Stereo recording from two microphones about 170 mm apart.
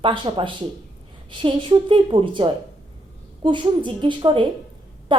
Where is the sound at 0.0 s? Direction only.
30° right (ahead or behind).